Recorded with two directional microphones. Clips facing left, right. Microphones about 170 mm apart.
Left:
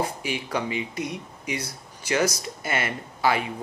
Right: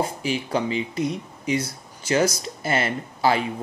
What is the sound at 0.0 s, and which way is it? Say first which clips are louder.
Speech: right 3 dB; 30° right (ahead or behind).